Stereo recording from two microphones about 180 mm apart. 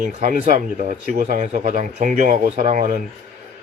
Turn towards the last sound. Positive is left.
turn(degrees=-50)  # may be behind; listen again after turning